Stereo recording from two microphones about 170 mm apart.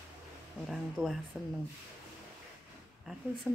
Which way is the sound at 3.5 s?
Centre (ahead or behind).